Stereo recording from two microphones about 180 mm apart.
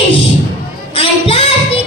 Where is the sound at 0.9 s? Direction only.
30° left (ahead or behind).